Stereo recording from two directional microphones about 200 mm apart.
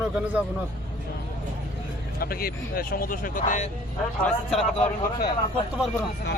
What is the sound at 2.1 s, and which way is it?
Speech, 50° left (ahead or behind).